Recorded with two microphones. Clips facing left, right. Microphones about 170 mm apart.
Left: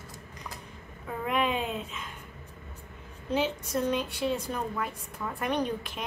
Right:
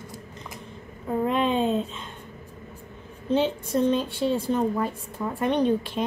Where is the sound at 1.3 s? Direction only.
30° right (ahead or behind).